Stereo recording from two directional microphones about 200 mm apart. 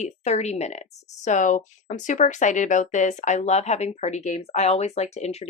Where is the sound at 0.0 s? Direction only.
35° left (ahead or behind).